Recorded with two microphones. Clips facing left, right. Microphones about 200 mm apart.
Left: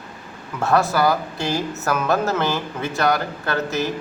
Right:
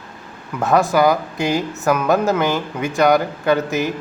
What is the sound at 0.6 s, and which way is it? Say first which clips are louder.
Speech: right 3 dB; 15° right (ahead or behind).